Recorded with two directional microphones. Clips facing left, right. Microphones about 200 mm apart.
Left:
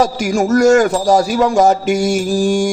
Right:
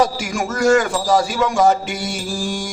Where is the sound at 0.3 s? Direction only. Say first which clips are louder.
Left 6 dB; 40° left (ahead or behind).